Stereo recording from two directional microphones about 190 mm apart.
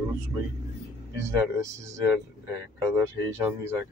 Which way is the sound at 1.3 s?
15° right (ahead or behind).